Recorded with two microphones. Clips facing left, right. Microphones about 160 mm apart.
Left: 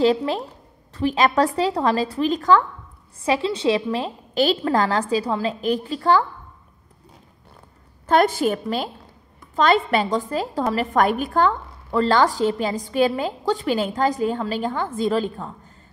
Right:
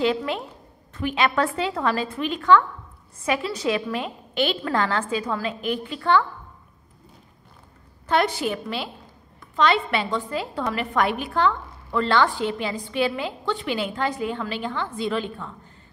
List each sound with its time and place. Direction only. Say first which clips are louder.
0.0 s a woman's voice: left 4 dB; 35° left (ahead or behind)
3.3 s a woman's voice: left 4 dB; 30° left (ahead or behind)
8.1 s a woman's voice: left 5 dB; 45° left (ahead or behind)